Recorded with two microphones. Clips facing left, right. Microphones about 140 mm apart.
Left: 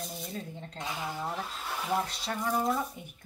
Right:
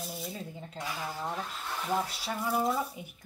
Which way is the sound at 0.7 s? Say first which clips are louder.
Left 1 dB; 20° left (ahead or behind).